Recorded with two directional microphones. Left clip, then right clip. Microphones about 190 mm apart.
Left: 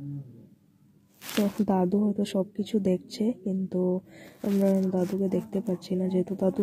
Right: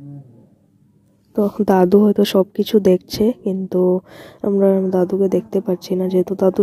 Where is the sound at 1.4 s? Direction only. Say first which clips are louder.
Right 13 dB; 50° right (ahead or behind).